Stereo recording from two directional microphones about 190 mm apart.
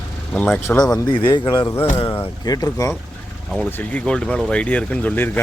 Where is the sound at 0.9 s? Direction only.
20° left (ahead or behind).